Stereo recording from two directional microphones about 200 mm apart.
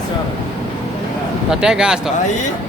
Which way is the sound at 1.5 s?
5° right (ahead or behind).